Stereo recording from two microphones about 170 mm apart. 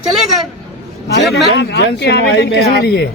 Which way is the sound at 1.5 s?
75° left (ahead or behind).